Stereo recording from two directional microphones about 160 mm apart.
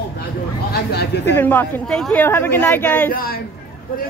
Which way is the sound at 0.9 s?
90° left.